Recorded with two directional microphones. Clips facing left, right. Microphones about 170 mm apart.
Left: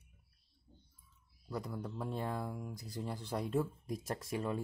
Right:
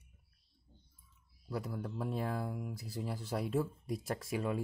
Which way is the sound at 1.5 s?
5° right (ahead or behind).